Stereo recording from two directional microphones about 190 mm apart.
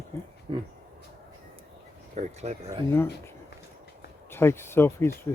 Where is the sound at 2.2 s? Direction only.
35° right (ahead or behind).